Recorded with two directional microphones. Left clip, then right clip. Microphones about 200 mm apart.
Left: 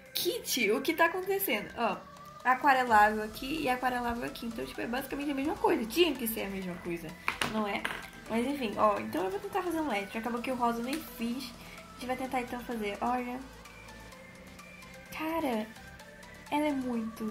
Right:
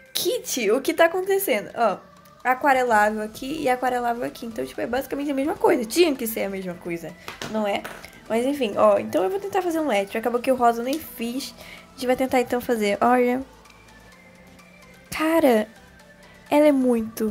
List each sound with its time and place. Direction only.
0.1 s a woman's voice: 45° right (ahead or behind)
15.0 s a woman's voice: 50° right (ahead or behind)